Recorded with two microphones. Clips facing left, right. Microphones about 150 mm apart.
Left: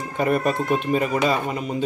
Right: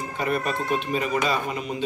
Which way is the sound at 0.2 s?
50° left (ahead or behind).